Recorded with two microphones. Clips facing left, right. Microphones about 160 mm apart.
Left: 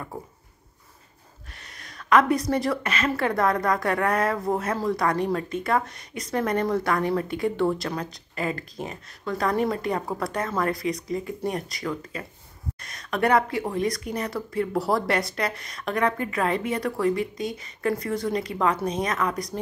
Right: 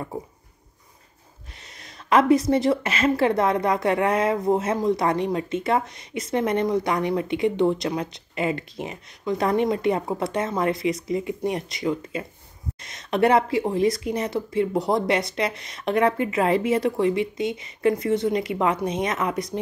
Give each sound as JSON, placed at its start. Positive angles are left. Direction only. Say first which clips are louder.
{"t": 1.6, "sound": "a woman's voice", "louder": "even", "side_deg": -25}